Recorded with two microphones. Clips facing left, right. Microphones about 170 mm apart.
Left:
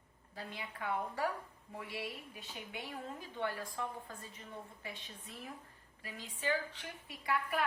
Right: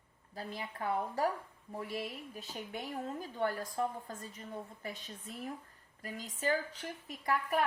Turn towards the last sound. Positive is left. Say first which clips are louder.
# right 3 dB
turn(degrees=-45)  # may be behind; listen again after turning